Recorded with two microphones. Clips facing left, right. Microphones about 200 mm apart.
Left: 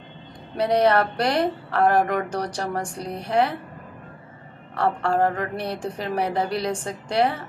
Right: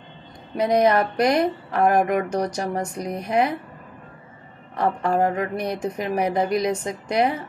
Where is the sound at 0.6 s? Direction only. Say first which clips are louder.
Right 1 dB; 10° right (ahead or behind).